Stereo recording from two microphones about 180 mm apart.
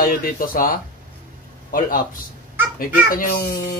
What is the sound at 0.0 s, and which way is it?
Speech, 50° left (ahead or behind).